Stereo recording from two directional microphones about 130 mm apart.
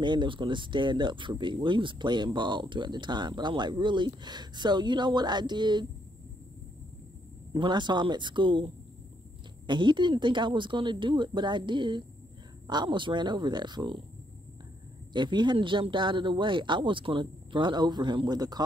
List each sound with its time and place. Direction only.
0.0 s speech: 35° right (ahead or behind)
7.5 s speech: 35° right (ahead or behind)
15.1 s speech: 35° right (ahead or behind)